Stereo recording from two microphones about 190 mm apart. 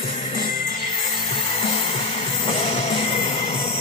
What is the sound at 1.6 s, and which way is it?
Music, 30° left (ahead or behind).